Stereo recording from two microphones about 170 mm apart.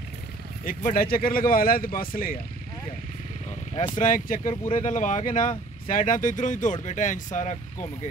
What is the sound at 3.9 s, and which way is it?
Speech, 50° left (ahead or behind).